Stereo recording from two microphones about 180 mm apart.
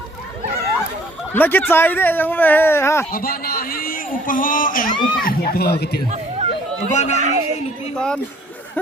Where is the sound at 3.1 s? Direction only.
55° left (ahead or behind).